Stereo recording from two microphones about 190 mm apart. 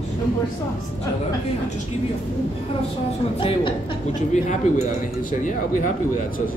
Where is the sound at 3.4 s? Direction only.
30° left (ahead or behind).